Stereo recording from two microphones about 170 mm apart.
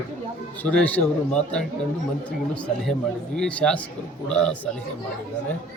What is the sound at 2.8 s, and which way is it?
Speech, 5° left (ahead or behind).